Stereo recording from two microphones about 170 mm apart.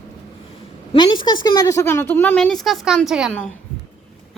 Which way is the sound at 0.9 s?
30° left (ahead or behind).